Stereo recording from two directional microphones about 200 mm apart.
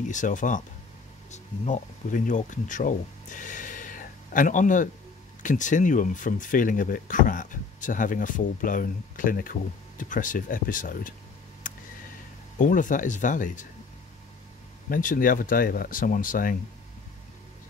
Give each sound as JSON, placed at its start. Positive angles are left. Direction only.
{"t": 0.0, "sound": "speech", "side_deg": 40}
{"t": 12.5, "sound": "speech", "side_deg": 40}
{"t": 14.9, "sound": "speech", "side_deg": 45}